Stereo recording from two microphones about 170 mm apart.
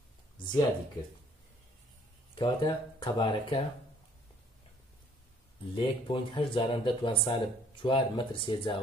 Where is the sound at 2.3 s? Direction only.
25° left (ahead or behind).